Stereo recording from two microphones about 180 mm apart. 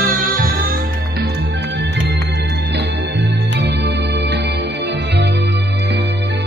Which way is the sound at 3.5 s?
70° right (ahead or behind).